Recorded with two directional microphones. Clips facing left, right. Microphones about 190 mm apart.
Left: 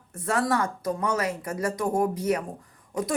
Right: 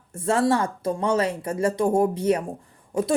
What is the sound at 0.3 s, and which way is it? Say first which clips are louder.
A woman's voice: right 4 dB; 30° right (ahead or behind).